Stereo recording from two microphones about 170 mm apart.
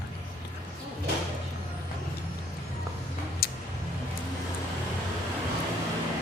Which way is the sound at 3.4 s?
65° left (ahead or behind).